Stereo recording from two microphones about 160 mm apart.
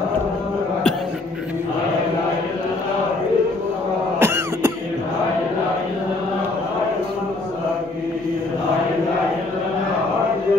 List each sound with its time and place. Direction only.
4.2 s throat clearing: 15° right (ahead or behind)